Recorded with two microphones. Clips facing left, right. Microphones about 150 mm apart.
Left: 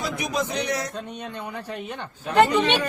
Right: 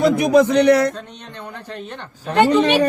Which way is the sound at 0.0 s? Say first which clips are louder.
Right 14 dB; 60° right (ahead or behind).